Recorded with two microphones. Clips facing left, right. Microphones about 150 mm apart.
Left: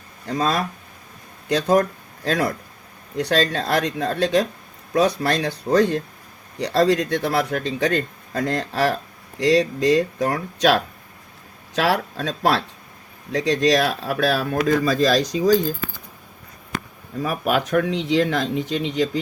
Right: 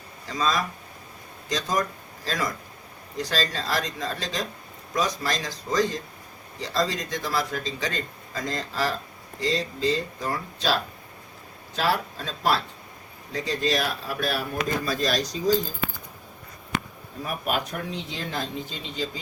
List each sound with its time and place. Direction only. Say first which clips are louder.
0.3 s speech: left 4 dB; 60° left (ahead or behind); by 15.6 s 85° left
17.2 s speech: left 7 dB; 90° left
17.7 s speech: left 13 dB; 80° left